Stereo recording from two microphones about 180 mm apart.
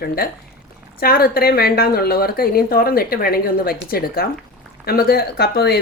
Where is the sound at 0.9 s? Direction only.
55° left (ahead or behind).